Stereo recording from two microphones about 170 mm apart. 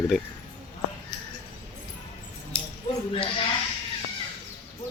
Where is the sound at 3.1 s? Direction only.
30° left (ahead or behind).